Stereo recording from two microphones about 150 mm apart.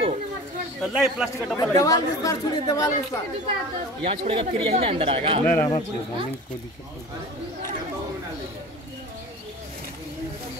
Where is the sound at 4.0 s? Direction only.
40° right (ahead or behind).